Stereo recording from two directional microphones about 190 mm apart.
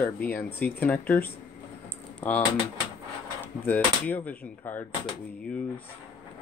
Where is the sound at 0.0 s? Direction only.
10° left (ahead or behind).